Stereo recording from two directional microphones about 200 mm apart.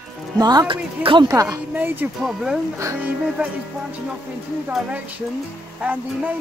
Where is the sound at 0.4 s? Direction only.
20° right (ahead or behind).